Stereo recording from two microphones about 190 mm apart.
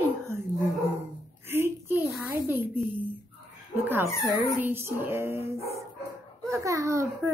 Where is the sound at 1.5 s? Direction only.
10° right (ahead or behind).